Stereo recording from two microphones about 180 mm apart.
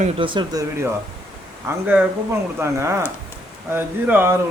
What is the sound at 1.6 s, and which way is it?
Speech, 10° right (ahead or behind).